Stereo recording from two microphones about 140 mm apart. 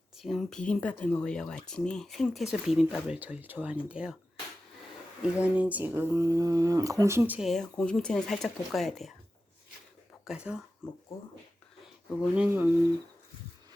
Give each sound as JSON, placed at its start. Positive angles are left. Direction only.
{"t": 0.2, "sound": "speech", "side_deg": 0}
{"t": 5.2, "sound": "speech", "side_deg": -10}
{"t": 7.3, "sound": "speech", "side_deg": 0}
{"t": 10.2, "sound": "speech", "side_deg": -5}
{"t": 12.3, "sound": "speech", "side_deg": -10}